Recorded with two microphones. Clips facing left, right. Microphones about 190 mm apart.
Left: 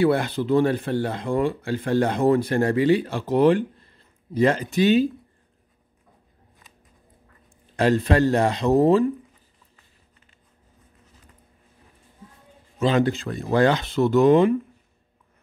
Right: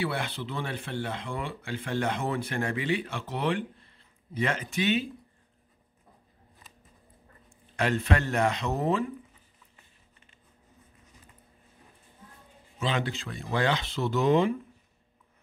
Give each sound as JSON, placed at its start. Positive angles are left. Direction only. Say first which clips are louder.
{"t": 0.0, "sound": "speech", "louder": "left 11 dB", "side_deg": 45}
{"t": 7.4, "sound": "speech", "louder": "left 8 dB", "side_deg": 35}
{"t": 12.7, "sound": "speech", "louder": "left 10 dB", "side_deg": 45}